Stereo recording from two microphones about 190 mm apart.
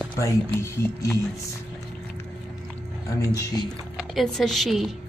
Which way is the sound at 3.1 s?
15° left (ahead or behind).